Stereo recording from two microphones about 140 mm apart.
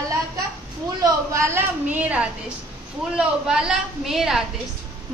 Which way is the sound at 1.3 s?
20° right (ahead or behind).